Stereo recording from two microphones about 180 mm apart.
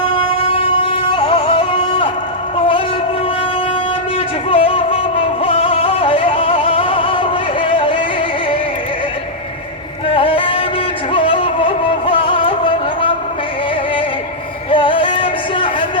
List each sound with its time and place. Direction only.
0.2 s music: 30° left (ahead or behind)
2.6 s a sound: 30° left (ahead or behind)
4.4 s music: 30° left (ahead or behind)
10.1 s music: 30° left (ahead or behind)
14.7 s music: 30° left (ahead or behind)